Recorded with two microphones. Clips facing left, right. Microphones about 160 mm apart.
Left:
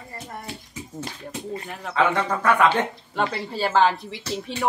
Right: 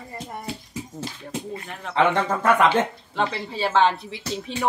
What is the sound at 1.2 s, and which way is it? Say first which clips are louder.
Speech: left 1 dB; 5° left (ahead or behind).